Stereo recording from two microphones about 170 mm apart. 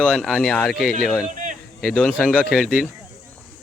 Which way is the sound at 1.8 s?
Centre (ahead or behind).